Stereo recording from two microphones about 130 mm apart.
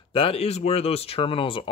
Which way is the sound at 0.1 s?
45° left (ahead or behind).